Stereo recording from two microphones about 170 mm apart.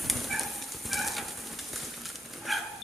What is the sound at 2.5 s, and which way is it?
Dog, centre (ahead or behind).